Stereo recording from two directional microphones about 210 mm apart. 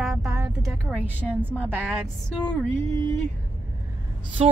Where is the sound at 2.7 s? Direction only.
15° left (ahead or behind).